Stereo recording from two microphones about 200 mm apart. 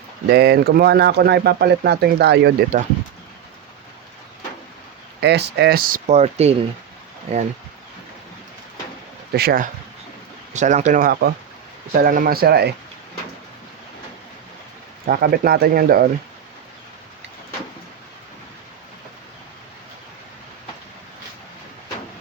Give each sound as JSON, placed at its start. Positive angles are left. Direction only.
{"t": 0.3, "sound": "speech", "side_deg": -55}
{"t": 2.7, "sound": "speech", "side_deg": -40}
{"t": 5.2, "sound": "speech", "side_deg": -55}
{"t": 9.3, "sound": "speech", "side_deg": -50}
{"t": 10.5, "sound": "speech", "side_deg": -35}
{"t": 15.0, "sound": "speech", "side_deg": -50}